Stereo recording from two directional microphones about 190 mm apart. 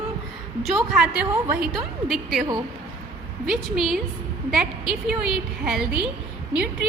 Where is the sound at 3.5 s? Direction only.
Centre (ahead or behind).